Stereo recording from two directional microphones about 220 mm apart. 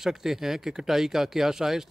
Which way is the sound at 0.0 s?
Centre (ahead or behind).